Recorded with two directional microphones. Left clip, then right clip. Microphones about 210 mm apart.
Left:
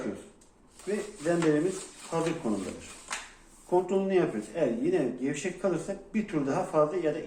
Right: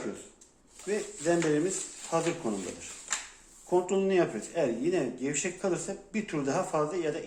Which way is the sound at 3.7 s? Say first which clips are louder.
Even; 45° right (ahead or behind).